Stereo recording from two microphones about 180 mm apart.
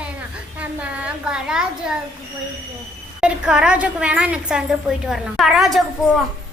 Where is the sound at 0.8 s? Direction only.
5° right (ahead or behind).